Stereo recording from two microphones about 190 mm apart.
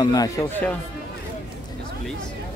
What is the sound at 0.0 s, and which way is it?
Speech, 20° left (ahead or behind).